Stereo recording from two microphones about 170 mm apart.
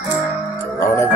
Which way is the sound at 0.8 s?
15° left (ahead or behind).